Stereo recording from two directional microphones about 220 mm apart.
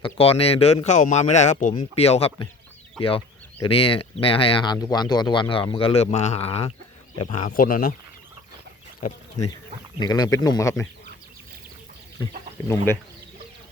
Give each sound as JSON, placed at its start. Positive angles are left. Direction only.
{"t": 0.0, "sound": "speech", "side_deg": 25}
{"t": 10.0, "sound": "speech", "side_deg": 15}
{"t": 12.6, "sound": "speech", "side_deg": 10}